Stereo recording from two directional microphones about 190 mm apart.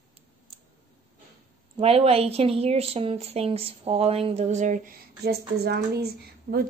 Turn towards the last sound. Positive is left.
turn(degrees=-55)  # may be behind; listen again after turning